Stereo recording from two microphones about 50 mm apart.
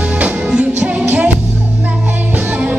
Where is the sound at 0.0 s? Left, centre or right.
Right.